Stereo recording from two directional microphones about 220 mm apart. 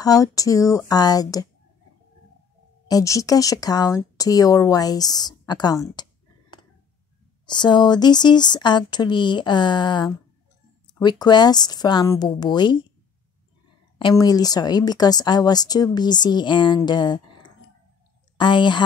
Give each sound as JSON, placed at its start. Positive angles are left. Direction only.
{"t": 0.0, "sound": "speech", "side_deg": 15}
{"t": 2.9, "sound": "speech", "side_deg": 15}
{"t": 7.4, "sound": "a woman's voice", "side_deg": 20}
{"t": 13.9, "sound": "a woman's voice", "side_deg": 20}